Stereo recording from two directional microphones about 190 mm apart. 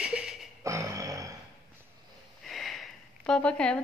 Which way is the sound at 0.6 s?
15° right (ahead or behind).